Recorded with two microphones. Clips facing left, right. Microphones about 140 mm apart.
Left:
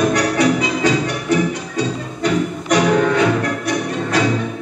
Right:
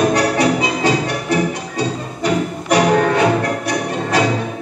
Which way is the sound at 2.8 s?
35° right (ahead or behind).